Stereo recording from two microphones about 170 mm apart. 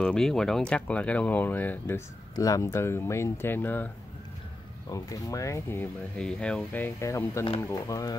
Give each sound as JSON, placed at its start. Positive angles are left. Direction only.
{"t": 0.0, "sound": "speech", "side_deg": 5}
{"t": 4.9, "sound": "speech", "side_deg": 20}